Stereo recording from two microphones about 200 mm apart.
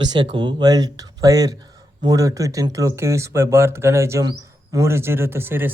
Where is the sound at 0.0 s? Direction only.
20° right (ahead or behind).